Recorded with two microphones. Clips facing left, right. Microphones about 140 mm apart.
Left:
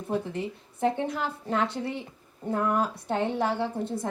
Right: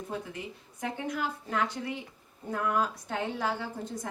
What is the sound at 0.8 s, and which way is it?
A woman's voice, 30° left (ahead or behind).